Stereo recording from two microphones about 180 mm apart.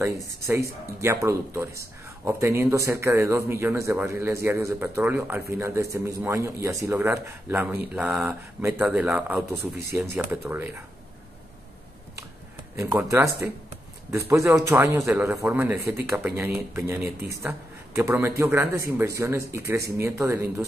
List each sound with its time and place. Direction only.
0.0 s speech: 15° right (ahead or behind)
12.7 s speech: 15° right (ahead or behind)